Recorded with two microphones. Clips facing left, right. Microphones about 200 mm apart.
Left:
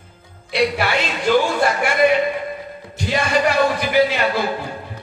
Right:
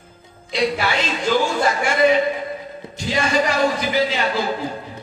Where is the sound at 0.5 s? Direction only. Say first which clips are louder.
Left 2 dB; 60° left (ahead or behind).